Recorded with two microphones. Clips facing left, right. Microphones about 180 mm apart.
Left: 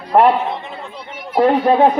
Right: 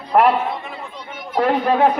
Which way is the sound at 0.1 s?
30° left (ahead or behind).